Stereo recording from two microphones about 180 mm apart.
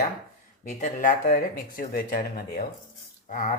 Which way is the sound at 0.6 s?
45° left (ahead or behind).